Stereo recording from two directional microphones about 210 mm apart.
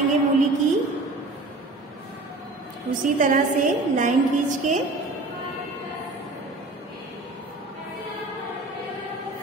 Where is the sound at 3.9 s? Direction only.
35° right (ahead or behind).